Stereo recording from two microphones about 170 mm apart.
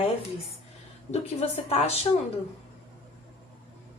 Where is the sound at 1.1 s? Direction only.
35° left (ahead or behind).